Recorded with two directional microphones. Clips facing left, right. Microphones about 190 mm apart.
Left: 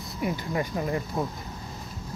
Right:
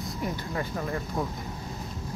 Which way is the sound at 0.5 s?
15° left (ahead or behind).